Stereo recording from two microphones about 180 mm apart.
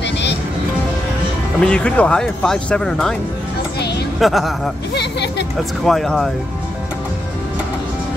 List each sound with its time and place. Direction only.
0.0 s music: 70° left (ahead or behind)
1.6 s speech: 5° left (ahead or behind)
4.2 s speech: centre (ahead or behind)
5.9 s speech: centre (ahead or behind)